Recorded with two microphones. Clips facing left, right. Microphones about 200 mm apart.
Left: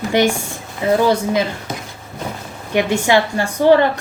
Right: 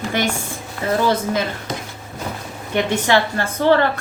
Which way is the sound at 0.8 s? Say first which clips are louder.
Left 4 dB; 15° left (ahead or behind).